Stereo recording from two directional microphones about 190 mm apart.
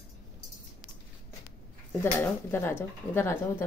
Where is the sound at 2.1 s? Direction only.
10° left (ahead or behind).